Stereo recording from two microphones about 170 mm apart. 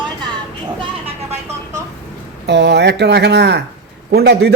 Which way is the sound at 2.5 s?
90° right.